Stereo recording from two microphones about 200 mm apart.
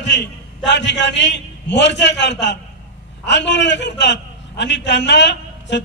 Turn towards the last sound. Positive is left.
turn(degrees=60)  # may be behind; listen again after turning